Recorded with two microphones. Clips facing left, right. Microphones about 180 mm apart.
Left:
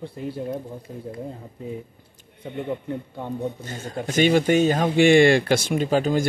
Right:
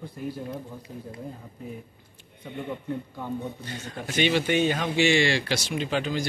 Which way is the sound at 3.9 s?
45° left (ahead or behind).